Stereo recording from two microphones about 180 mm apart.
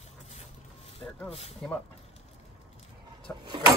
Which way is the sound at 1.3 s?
35° left (ahead or behind).